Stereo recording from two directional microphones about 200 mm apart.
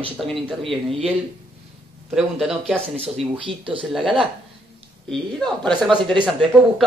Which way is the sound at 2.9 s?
30° right (ahead or behind).